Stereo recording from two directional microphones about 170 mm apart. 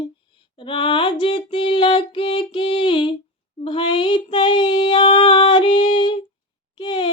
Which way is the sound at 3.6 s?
30° left (ahead or behind).